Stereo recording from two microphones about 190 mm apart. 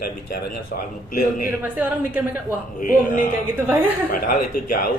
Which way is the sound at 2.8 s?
45° left (ahead or behind).